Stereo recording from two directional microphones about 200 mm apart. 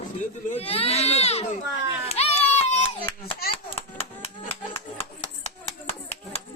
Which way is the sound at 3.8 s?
30° left (ahead or behind).